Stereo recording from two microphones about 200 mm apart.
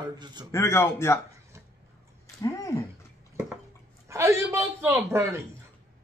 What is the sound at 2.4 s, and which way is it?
Speech, 15° left (ahead or behind).